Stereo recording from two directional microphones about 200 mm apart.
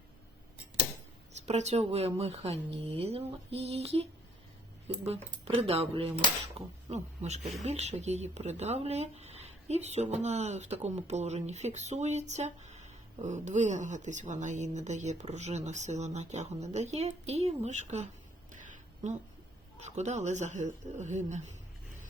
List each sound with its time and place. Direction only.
1.3 s speech: 35° right (ahead or behind)
5.0 s speech: 30° right (ahead or behind)
18.5 s a sound: 40° right (ahead or behind)
19.8 s speech: 35° right (ahead or behind)